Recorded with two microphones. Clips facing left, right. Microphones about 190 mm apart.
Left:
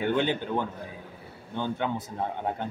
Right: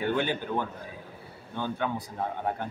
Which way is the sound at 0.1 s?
20° left (ahead or behind).